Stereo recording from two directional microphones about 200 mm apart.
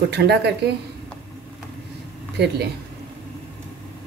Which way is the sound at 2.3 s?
55° right (ahead or behind).